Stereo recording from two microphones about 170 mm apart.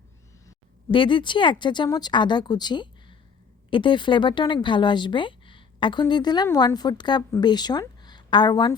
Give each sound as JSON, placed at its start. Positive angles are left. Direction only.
{"t": 0.9, "sound": "speech", "side_deg": 30}